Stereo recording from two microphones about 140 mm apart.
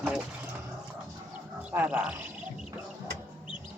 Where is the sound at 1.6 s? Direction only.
10° right (ahead or behind).